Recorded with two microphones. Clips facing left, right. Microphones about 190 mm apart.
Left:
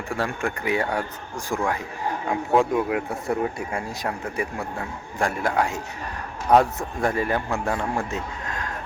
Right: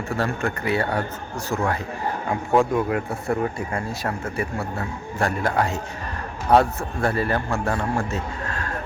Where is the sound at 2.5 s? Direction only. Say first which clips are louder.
Right 1 dB; 5° left (ahead or behind).